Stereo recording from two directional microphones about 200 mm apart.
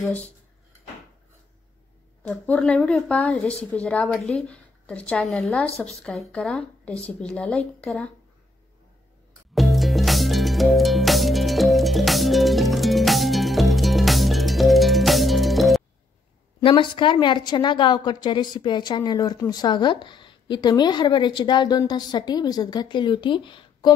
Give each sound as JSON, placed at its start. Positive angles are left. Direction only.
{"t": 0.0, "sound": "speech", "side_deg": 5}
{"t": 2.2, "sound": "a woman's voice", "side_deg": 5}
{"t": 9.6, "sound": "music", "side_deg": 0}
{"t": 16.6, "sound": "a woman's voice", "side_deg": 25}